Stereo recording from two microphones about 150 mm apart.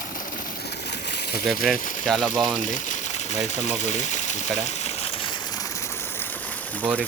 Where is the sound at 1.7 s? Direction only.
65° left (ahead or behind).